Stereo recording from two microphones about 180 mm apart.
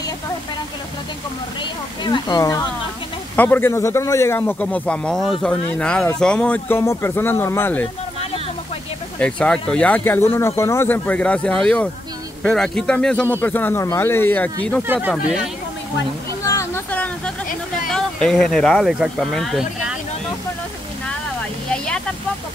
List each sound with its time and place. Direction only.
1.6 s speech: 25° left (ahead or behind)
3.3 s speech: 10° left (ahead or behind)
9.2 s speech: 5° left (ahead or behind)
14.8 s speech: 10° right (ahead or behind)
16.4 s a sound: 15° left (ahead or behind)
17.8 s speech: centre (ahead or behind)
21.6 s a sound: 5° left (ahead or behind)